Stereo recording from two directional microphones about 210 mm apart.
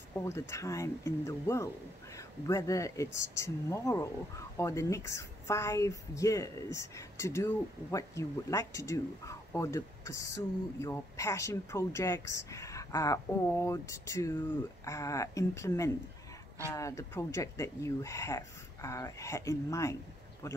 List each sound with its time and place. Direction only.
0.3 s speech: 15° left (ahead or behind)